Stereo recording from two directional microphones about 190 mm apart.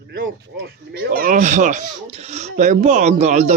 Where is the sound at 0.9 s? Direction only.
50° right (ahead or behind).